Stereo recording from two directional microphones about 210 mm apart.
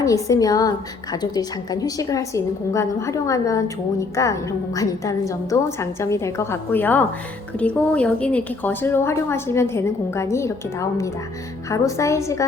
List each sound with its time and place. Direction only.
0.0 s a woman's voice: 15° left (ahead or behind)